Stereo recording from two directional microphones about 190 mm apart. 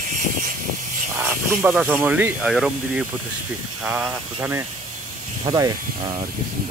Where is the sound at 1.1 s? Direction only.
15° right (ahead or behind).